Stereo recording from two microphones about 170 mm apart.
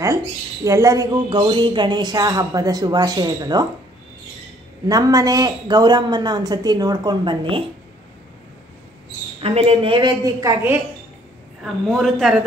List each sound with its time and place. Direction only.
0.7 s speech: 20° right (ahead or behind)
4.8 s speech: 20° right (ahead or behind)
9.4 s speech: 35° right (ahead or behind); by 10.8 s 15° right (ahead or behind)
11.6 s a woman's voice: centre (ahead or behind)